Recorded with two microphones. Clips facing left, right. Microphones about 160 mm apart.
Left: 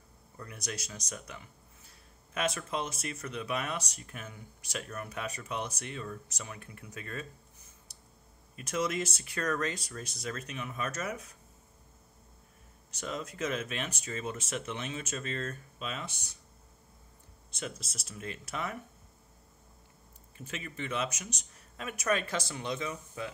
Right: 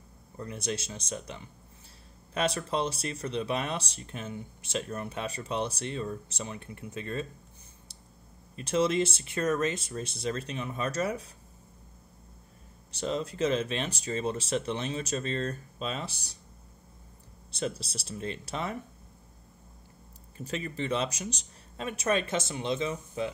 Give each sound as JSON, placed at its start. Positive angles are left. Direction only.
{"t": 0.4, "sound": "speech", "side_deg": -25}
{"t": 8.5, "sound": "speech", "side_deg": -30}
{"t": 12.9, "sound": "speech", "side_deg": -30}
{"t": 17.5, "sound": "speech", "side_deg": -35}
{"t": 20.3, "sound": "speech", "side_deg": -35}